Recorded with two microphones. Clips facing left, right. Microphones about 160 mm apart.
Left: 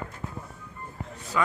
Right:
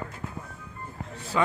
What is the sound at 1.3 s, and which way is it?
Speech, 25° right (ahead or behind).